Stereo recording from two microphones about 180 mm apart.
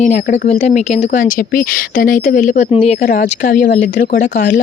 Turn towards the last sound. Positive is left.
turn(degrees=45)  # may be behind; listen again after turning